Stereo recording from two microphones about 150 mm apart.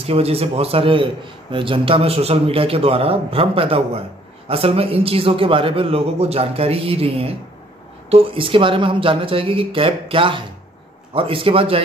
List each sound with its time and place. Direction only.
0.0 s a man's voice: 40° right (ahead or behind)